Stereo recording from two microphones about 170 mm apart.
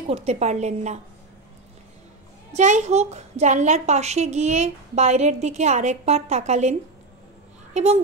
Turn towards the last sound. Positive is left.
turn(degrees=-40)  # may be behind; listen again after turning